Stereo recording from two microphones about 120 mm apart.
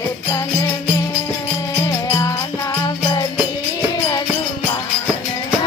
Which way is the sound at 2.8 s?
30° left (ahead or behind).